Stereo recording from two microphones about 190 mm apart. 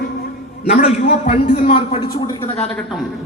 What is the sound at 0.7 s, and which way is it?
A man's voice, 40° left (ahead or behind).